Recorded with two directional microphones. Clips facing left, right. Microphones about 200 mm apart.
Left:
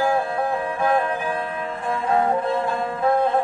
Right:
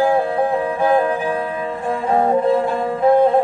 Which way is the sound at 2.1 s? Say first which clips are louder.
Right 6 dB; 30° right (ahead or behind).